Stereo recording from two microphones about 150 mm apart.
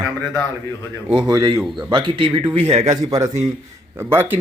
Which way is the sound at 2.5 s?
45° right (ahead or behind).